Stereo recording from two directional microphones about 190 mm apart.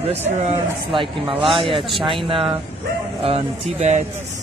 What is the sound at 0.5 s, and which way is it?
A man's voice, 25° right (ahead or behind).